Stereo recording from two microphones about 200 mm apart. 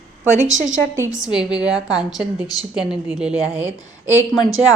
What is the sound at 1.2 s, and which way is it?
A woman's voice, 5° right (ahead or behind).